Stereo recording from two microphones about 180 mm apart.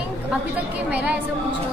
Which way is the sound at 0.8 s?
5° right (ahead or behind).